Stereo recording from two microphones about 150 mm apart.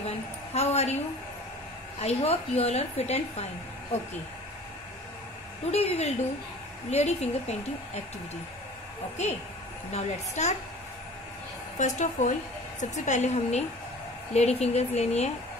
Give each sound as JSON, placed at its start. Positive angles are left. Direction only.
{"t": 0.6, "sound": "a woman's voice", "side_deg": 45}
{"t": 2.0, "sound": "a woman's voice", "side_deg": 40}
{"t": 5.7, "sound": "a woman's voice", "side_deg": 45}
{"t": 9.2, "sound": "a woman's voice", "side_deg": 50}
{"t": 11.8, "sound": "a woman's voice", "side_deg": 55}